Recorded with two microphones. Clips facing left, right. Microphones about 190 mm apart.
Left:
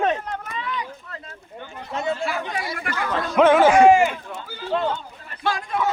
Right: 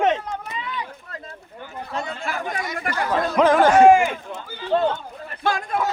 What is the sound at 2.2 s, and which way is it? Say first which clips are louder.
Speech: left 1 dB; 45° right (ahead or behind).